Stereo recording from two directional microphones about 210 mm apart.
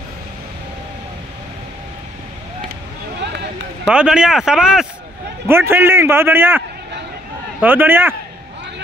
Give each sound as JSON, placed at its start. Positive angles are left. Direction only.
{"t": 3.2, "sound": "a sound", "side_deg": -55}
{"t": 3.8, "sound": "a man's voice", "side_deg": -5}
{"t": 7.6, "sound": "a man's voice", "side_deg": -10}